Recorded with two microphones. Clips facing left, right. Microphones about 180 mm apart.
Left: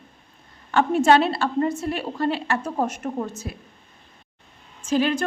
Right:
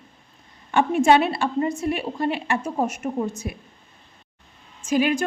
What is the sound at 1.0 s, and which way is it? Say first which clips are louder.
A woman's voice: even; 10° right (ahead or behind).